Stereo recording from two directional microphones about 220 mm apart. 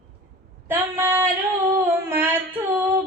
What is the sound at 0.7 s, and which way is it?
Female singing, 10° right (ahead or behind).